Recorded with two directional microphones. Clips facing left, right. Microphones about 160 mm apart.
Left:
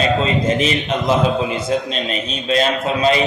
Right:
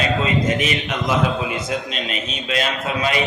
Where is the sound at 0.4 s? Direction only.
30° left (ahead or behind).